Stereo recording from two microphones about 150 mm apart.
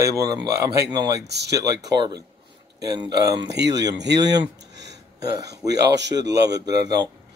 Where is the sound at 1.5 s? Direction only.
25° right (ahead or behind).